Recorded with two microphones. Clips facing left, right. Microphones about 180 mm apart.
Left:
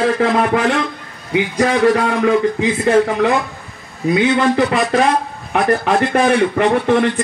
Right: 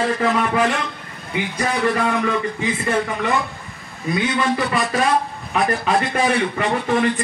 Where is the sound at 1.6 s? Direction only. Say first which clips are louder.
Left 7 dB; 75° left (ahead or behind).